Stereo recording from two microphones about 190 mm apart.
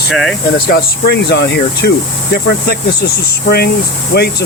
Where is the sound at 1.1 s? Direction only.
60° left (ahead or behind).